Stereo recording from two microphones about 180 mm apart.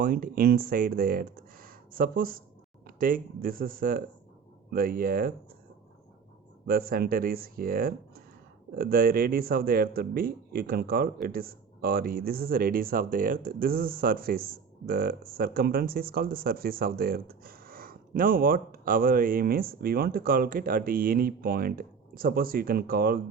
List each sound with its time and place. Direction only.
0.0 s speech: 50° right (ahead or behind)
6.7 s speech: 55° right (ahead or behind)